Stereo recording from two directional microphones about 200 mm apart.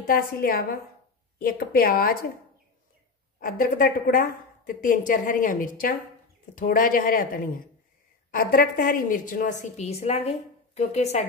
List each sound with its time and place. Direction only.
0.0 s a woman's voice: 45° left (ahead or behind)
3.3 s a woman's voice: 45° left (ahead or behind)